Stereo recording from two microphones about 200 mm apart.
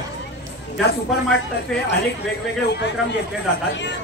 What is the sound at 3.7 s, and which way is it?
Chatter, 60° left (ahead or behind).